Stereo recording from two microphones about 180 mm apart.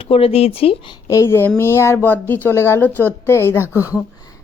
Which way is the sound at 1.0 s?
15° left (ahead or behind).